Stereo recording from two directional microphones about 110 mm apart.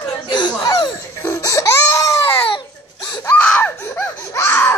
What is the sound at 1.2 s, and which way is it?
Crying, 30° left (ahead or behind).